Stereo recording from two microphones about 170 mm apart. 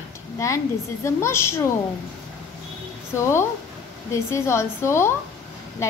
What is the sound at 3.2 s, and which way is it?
A woman's voice, 15° left (ahead or behind).